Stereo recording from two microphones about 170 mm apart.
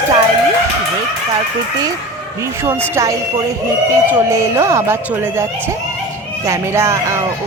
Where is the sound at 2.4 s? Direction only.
15° right (ahead or behind).